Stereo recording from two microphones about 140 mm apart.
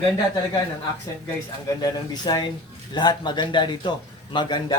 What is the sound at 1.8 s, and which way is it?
A man's voice, 30° left (ahead or behind).